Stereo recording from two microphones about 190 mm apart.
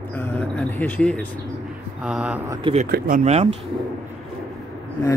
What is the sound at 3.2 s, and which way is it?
Speech, 35° right (ahead or behind).